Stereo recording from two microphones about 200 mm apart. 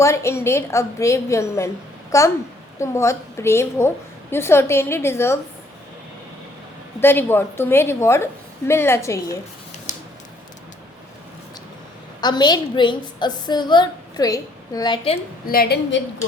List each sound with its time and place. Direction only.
0.0 s a woman's voice: 15° left (ahead or behind)
7.0 s a woman's voice: 10° left (ahead or behind)
9.9 s squish: 35° left (ahead or behind)
12.2 s a woman's voice: 20° left (ahead or behind)
15.4 s a woman's voice: 50° left (ahead or behind)